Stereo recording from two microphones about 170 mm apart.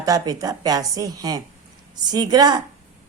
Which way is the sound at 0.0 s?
20° right (ahead or behind).